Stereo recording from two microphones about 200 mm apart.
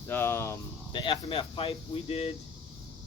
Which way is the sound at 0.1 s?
10° left (ahead or behind).